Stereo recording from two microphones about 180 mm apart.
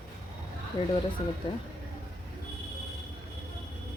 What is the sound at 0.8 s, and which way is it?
Speech, 25° left (ahead or behind).